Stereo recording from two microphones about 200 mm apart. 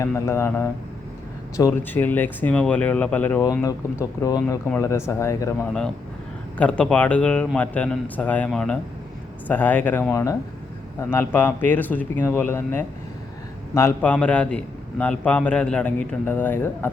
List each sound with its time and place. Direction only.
0.0 s a man's voice: 15° left (ahead or behind)